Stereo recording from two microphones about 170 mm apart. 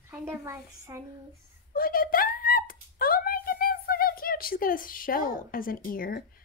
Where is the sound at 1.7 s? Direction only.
55° left (ahead or behind).